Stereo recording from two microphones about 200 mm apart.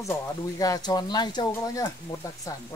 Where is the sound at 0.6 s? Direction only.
20° left (ahead or behind).